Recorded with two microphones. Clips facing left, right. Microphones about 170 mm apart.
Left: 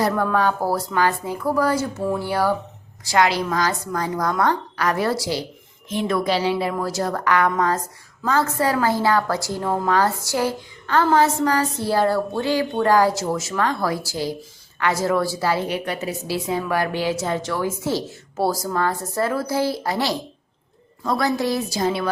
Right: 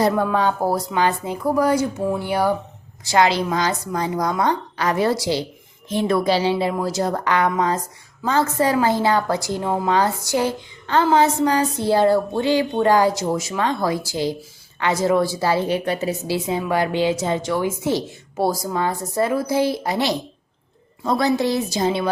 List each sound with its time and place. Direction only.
0.0 s a woman's voice: 20° right (ahead or behind)
5.9 s a woman's voice: 30° right (ahead or behind)